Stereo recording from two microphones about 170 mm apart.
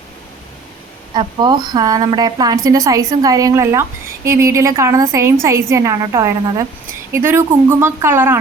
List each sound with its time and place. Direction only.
1.1 s a woman's voice: 25° right (ahead or behind)